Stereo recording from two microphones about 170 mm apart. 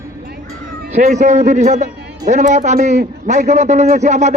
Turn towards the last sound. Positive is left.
turn(degrees=-45)  # may be behind; listen again after turning